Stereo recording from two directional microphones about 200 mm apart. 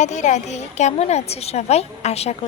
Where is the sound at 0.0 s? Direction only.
35° left (ahead or behind).